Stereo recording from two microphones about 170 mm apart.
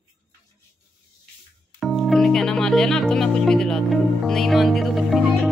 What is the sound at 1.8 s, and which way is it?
Speech, centre (ahead or behind).